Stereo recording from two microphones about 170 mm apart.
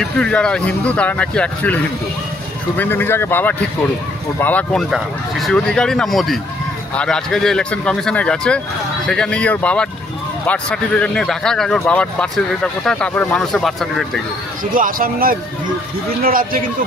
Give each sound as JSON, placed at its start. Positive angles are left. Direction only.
{"t": 0.0, "sound": "speech", "side_deg": 5}
{"t": 2.8, "sound": "speech", "side_deg": 10}
{"t": 14.6, "sound": "speech", "side_deg": -55}